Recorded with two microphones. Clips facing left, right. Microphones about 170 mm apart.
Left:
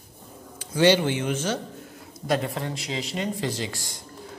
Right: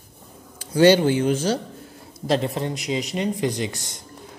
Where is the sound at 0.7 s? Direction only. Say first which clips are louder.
Right 5 dB; 40° right (ahead or behind); by 4.0 s 20° right (ahead or behind).